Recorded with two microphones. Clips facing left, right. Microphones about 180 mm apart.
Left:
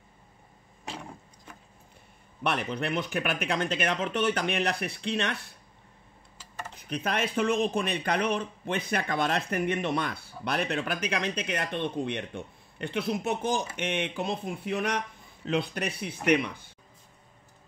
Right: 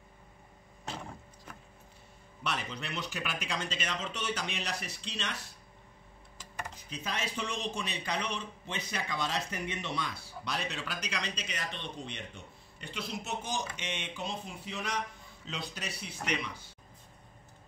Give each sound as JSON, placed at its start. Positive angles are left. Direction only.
{"t": 2.4, "sound": "speech", "side_deg": 55}
{"t": 6.7, "sound": "speech", "side_deg": 60}